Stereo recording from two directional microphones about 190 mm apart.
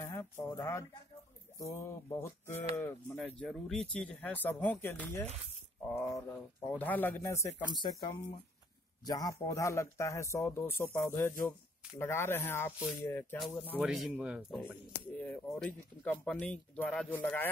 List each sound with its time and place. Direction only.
0.0 s a man's voice: 20° left (ahead or behind)
13.7 s speech: 5° right (ahead or behind)
15.1 s speech: 10° left (ahead or behind)